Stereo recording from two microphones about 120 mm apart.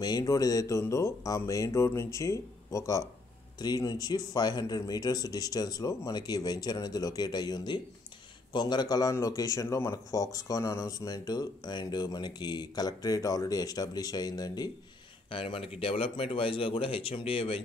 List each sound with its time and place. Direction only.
0.0 s a man's voice: 30° left (ahead or behind)
15.2 s speech: 50° left (ahead or behind)